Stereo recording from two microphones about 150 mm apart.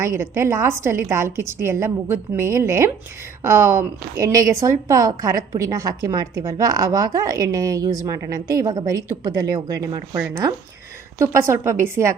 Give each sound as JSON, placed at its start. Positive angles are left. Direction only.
{"t": 0.0, "sound": "a woman's voice", "side_deg": -20}